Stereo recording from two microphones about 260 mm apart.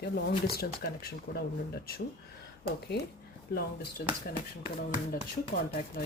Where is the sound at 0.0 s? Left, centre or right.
Left.